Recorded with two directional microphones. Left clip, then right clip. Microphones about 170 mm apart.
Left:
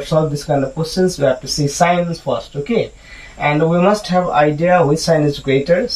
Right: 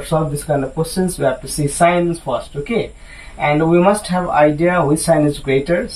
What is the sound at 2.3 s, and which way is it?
Speech, 30° left (ahead or behind).